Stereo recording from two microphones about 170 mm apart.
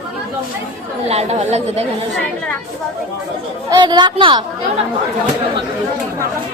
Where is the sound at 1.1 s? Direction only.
40° right (ahead or behind).